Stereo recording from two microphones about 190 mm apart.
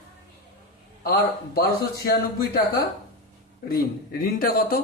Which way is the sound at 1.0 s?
50° left (ahead or behind).